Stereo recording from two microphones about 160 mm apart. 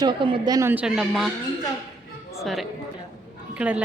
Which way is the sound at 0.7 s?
5° right (ahead or behind).